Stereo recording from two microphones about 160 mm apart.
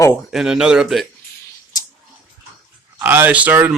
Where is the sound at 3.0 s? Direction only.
10° right (ahead or behind).